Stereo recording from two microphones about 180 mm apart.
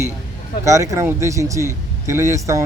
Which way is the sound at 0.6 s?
15° right (ahead or behind).